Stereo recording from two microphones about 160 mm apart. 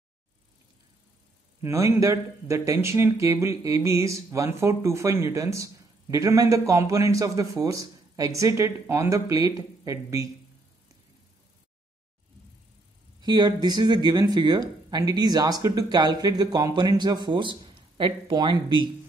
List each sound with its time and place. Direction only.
1.6 s speech: 20° right (ahead or behind)
13.2 s speech: 25° right (ahead or behind)